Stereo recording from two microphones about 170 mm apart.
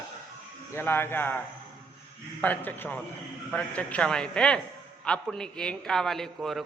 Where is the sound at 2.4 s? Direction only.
10° left (ahead or behind).